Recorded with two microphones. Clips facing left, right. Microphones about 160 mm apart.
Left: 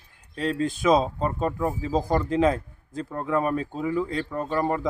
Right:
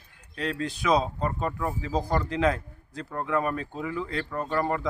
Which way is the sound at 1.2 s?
25° left (ahead or behind).